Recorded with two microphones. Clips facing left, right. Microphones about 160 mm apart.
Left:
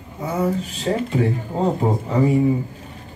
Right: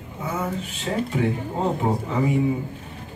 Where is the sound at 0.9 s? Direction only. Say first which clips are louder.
Left 4 dB; 40° left (ahead or behind).